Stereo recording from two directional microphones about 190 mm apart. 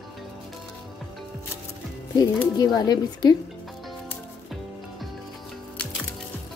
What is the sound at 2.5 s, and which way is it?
Speech, 20° left (ahead or behind).